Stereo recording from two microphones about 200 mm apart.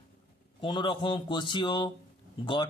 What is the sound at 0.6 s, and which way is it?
Speech, 25° left (ahead or behind).